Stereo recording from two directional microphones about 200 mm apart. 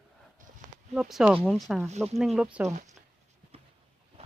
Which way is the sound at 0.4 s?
40° right (ahead or behind).